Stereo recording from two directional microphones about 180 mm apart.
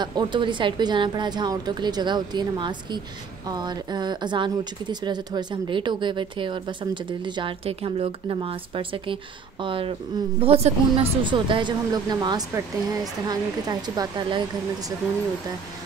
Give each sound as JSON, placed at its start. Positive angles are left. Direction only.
{"t": 0.0, "sound": "speech", "side_deg": -25}